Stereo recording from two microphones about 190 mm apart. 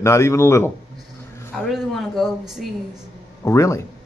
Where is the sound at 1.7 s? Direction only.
Centre (ahead or behind).